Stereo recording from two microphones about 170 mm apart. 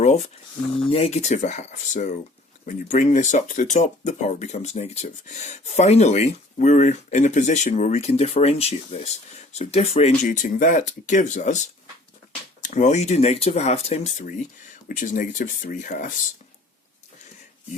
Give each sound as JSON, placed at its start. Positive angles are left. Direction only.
{"t": 0.8, "sound": "speech", "side_deg": 35}
{"t": 10.2, "sound": "speech", "side_deg": 50}